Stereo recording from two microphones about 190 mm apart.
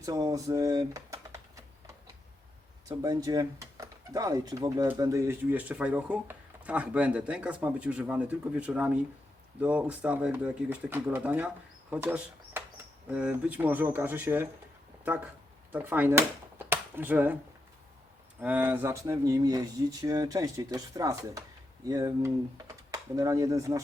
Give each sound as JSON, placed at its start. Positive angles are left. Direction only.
{"t": 0.0, "sound": "speech", "side_deg": -20}
{"t": 3.0, "sound": "speech", "side_deg": -20}
{"t": 16.6, "sound": "a sound", "side_deg": -10}
{"t": 18.3, "sound": "speech", "side_deg": -10}